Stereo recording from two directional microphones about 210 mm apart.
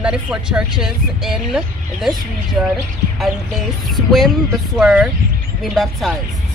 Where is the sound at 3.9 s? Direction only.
Centre (ahead or behind).